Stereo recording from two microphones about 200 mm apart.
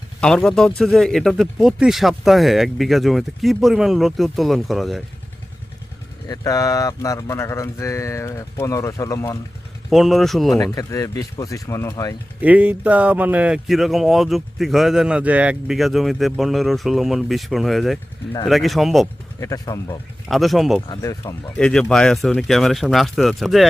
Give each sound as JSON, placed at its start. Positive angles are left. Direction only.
{"t": 0.2, "sound": "speech", "side_deg": 5}
{"t": 6.2, "sound": "speech", "side_deg": 20}
{"t": 9.9, "sound": "speech", "side_deg": 0}
{"t": 10.5, "sound": "speech", "side_deg": 15}
{"t": 12.4, "sound": "speech", "side_deg": -10}
{"t": 19.4, "sound": "speech", "side_deg": 15}
{"t": 20.2, "sound": "speech", "side_deg": 0}
{"t": 20.8, "sound": "speech", "side_deg": 20}
{"t": 21.6, "sound": "speech", "side_deg": 5}